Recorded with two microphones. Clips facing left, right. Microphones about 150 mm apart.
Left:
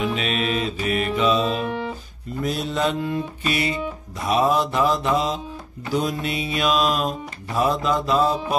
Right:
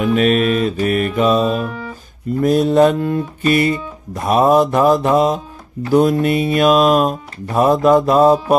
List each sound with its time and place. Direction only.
0.0 s mantra: 50° right (ahead or behind)